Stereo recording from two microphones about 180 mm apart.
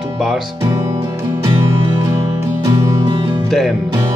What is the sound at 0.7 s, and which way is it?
Music, 15° right (ahead or behind).